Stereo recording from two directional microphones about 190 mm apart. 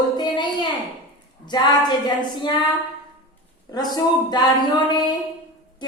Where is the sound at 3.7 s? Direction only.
20° left (ahead or behind).